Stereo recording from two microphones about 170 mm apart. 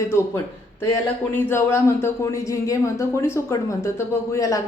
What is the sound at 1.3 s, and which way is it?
Speech, 15° left (ahead or behind).